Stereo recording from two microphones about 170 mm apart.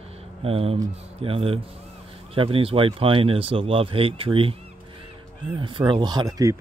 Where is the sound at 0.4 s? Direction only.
35° right (ahead or behind).